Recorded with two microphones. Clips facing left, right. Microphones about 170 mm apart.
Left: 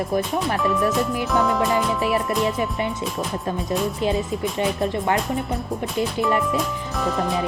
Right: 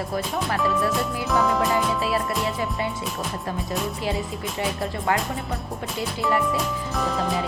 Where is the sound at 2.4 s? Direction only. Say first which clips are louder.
Left 3 dB; 20° left (ahead or behind).